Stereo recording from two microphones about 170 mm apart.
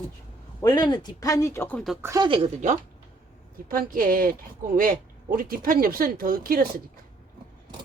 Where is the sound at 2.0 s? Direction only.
20° right (ahead or behind).